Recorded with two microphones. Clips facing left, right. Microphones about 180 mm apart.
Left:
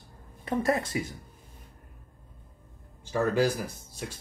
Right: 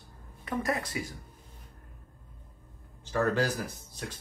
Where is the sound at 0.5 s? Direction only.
25° left (ahead or behind).